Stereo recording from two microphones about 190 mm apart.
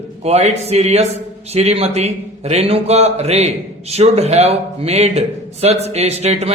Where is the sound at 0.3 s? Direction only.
35° right (ahead or behind).